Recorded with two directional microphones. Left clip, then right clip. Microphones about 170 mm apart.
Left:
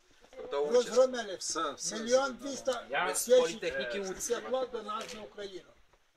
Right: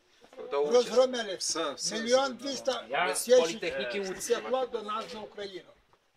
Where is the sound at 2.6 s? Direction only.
45° right (ahead or behind).